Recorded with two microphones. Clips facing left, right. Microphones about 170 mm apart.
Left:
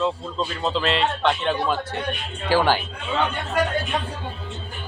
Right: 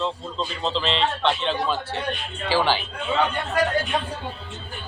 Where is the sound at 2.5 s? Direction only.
15° left (ahead or behind).